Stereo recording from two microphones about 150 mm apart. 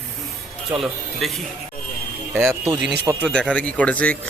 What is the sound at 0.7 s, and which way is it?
Speech, 15° right (ahead or behind).